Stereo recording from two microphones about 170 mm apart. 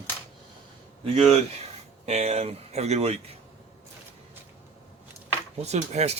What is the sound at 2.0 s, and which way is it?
A man's voice, 40° right (ahead or behind).